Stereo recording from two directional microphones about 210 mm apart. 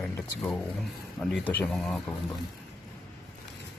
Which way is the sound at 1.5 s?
5° left (ahead or behind).